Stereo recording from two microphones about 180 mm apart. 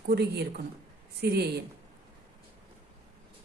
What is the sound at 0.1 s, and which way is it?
A woman's voice, 65° right (ahead or behind).